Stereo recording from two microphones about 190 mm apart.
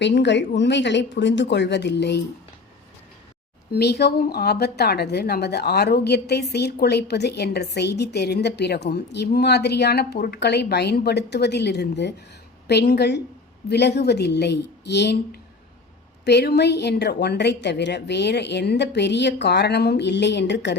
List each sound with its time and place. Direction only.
0.0 s speech: 65° left (ahead or behind)
3.7 s a woman's voice: 60° left (ahead or behind)